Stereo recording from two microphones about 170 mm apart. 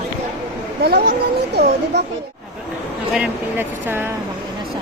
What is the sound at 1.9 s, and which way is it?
Speech, 90° right.